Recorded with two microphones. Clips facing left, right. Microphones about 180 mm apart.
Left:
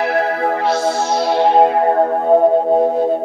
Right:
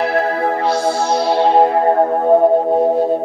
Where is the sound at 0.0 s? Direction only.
30° right (ahead or behind).